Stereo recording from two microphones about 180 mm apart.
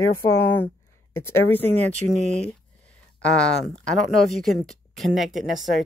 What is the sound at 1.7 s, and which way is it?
Speech, 40° right (ahead or behind).